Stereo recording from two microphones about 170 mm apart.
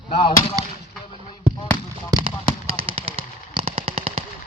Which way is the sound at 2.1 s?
30° right (ahead or behind).